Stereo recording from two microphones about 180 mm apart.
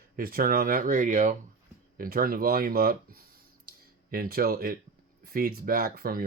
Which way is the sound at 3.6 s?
55° right (ahead or behind).